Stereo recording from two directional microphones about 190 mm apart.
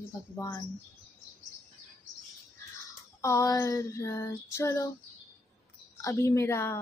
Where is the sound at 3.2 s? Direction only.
15° left (ahead or behind).